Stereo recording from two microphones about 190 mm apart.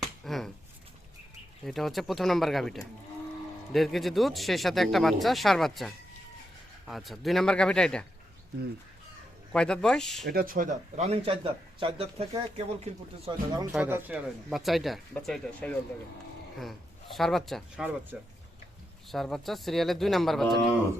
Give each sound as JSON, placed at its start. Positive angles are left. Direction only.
{"t": 0.3, "sound": "a sound", "side_deg": 0}
{"t": 1.6, "sound": "speech", "side_deg": 0}
{"t": 9.5, "sound": "speech", "side_deg": 5}
{"t": 10.2, "sound": "speech", "side_deg": -50}
{"t": 13.7, "sound": "speech", "side_deg": -10}
{"t": 17.2, "sound": "speech", "side_deg": 0}